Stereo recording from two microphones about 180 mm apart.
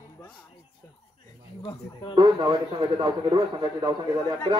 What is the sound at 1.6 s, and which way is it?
Speech, 25° left (ahead or behind).